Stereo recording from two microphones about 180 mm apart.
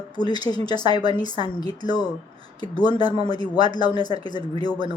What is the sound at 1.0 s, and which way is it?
Speech, 30° right (ahead or behind).